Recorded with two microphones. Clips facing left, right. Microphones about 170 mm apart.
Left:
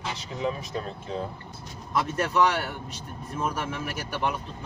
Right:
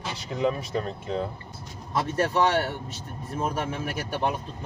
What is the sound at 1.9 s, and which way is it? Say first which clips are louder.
Speech: right 1 dB; 35° right (ahead or behind).